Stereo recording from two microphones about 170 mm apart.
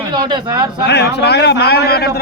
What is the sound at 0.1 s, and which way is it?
Speech, 25° right (ahead or behind).